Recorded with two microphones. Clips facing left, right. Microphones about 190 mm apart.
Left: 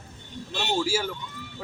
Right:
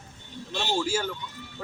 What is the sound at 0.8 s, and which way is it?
Speech, 10° left (ahead or behind).